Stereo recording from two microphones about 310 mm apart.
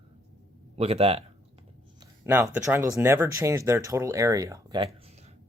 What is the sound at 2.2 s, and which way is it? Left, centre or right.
Speech, centre.